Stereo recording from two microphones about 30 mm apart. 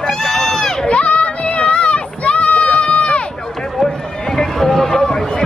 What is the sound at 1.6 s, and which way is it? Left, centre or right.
Run, left.